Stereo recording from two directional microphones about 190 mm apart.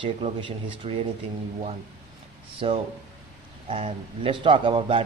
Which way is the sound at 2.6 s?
30° right (ahead or behind).